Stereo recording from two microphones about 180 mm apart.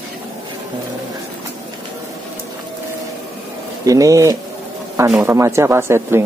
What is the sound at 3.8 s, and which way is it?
Speech, 20° right (ahead or behind).